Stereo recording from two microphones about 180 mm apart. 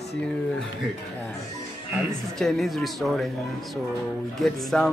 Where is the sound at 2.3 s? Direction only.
Centre (ahead or behind).